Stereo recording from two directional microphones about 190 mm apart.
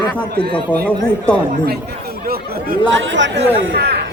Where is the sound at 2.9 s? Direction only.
75° right (ahead or behind).